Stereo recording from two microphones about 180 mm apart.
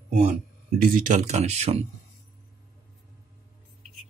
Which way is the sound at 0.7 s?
50° right (ahead or behind).